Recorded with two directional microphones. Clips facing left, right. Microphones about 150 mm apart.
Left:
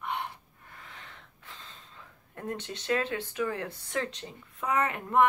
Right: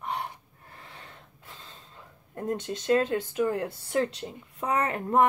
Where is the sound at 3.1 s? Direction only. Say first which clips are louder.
Right 5 dB; 15° right (ahead or behind).